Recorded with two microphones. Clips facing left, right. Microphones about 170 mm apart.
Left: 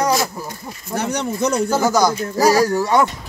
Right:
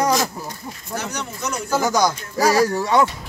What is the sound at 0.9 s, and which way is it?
Speech, 30° left (ahead or behind).